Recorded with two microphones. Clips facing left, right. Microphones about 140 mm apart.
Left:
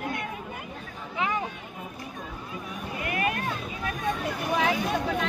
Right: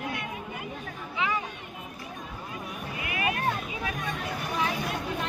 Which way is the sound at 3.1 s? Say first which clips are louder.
Left 2 dB; 50° left (ahead or behind).